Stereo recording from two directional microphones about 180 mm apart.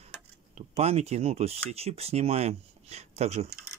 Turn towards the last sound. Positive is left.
turn(degrees=-35)  # may be behind; listen again after turning